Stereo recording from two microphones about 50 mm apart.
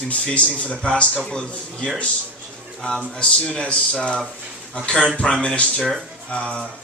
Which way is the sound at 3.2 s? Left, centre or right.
Left.